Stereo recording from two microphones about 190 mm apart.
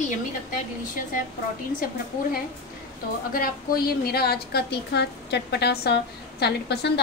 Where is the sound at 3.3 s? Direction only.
50° left (ahead or behind).